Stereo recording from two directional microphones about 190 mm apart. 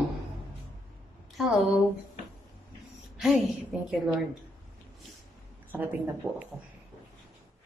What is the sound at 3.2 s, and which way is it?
A woman's voice, centre (ahead or behind).